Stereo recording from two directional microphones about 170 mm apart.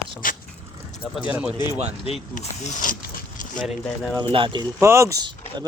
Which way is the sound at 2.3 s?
50° left (ahead or behind).